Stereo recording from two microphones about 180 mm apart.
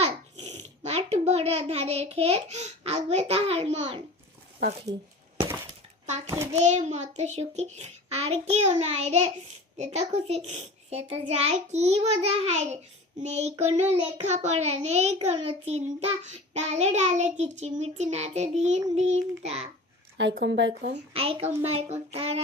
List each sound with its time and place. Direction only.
0.0 s a child's voice: 40° right (ahead or behind)
6.2 s a child's voice: 15° right (ahead or behind)
6.5 s a child's voice: 40° right (ahead or behind)
20.3 s speech: 75° right (ahead or behind)
21.1 s a child's voice: 30° right (ahead or behind)